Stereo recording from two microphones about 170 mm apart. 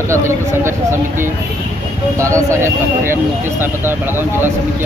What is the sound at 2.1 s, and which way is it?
Speech, 15° right (ahead or behind).